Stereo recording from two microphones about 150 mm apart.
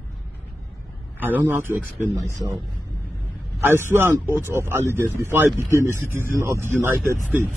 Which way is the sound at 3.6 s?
15° right (ahead or behind).